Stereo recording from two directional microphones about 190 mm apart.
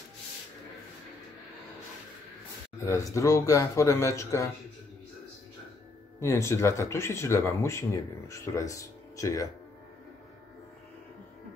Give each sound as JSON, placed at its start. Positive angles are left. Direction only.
{"t": 2.8, "sound": "speech", "side_deg": 15}
{"t": 6.1, "sound": "speech", "side_deg": 15}